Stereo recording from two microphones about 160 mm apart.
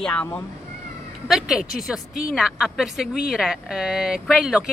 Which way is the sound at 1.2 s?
5° right (ahead or behind).